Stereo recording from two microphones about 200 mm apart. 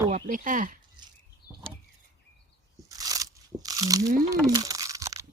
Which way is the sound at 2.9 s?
20° right (ahead or behind).